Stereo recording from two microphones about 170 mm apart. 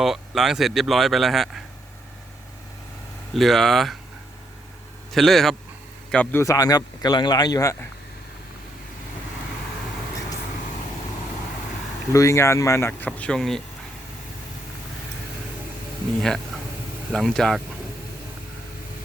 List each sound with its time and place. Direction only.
0.0 s speech: centre (ahead or behind)
3.3 s speech: centre (ahead or behind)
5.1 s speech: centre (ahead or behind); by 7.9 s 20° left (ahead or behind)
12.1 s speech: 20° left (ahead or behind)
17.1 s speech: centre (ahead or behind)